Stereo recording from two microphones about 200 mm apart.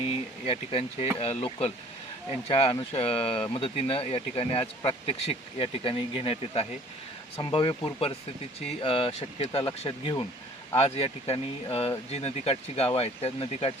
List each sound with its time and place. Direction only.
0.4 s speech: 30° left (ahead or behind)